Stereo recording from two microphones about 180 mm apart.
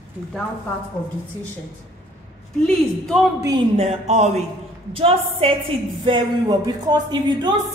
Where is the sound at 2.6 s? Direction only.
Centre (ahead or behind).